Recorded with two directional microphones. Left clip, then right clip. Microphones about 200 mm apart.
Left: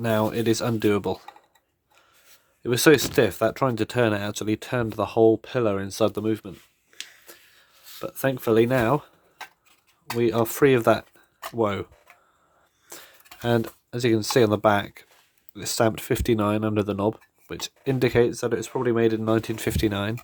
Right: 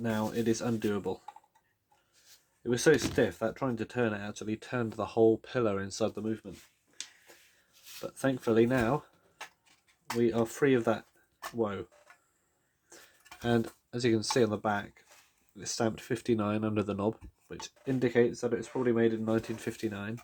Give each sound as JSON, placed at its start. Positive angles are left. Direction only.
{"t": 0.0, "sound": "speech", "side_deg": 50}
{"t": 2.6, "sound": "speech", "side_deg": 50}
{"t": 8.0, "sound": "speech", "side_deg": 40}
{"t": 10.2, "sound": "speech", "side_deg": 45}
{"t": 12.9, "sound": "cutlery", "side_deg": 45}
{"t": 13.4, "sound": "speech", "side_deg": 35}
{"t": 17.5, "sound": "speech", "side_deg": 50}